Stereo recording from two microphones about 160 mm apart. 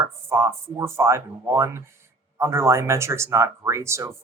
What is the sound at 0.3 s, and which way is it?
Speech, 15° right (ahead or behind).